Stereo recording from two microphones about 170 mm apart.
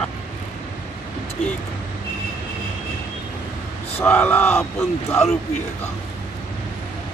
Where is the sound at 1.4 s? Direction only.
45° left (ahead or behind).